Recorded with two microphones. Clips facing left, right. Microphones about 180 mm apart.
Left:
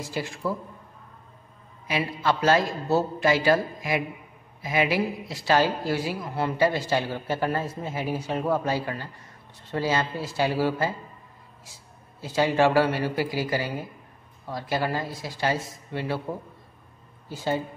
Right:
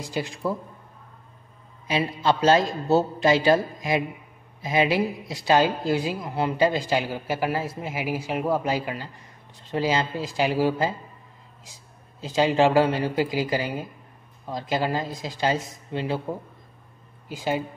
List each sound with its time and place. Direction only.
0.0 s a woman's voice: 15° right (ahead or behind)
1.9 s a woman's voice: 20° right (ahead or behind)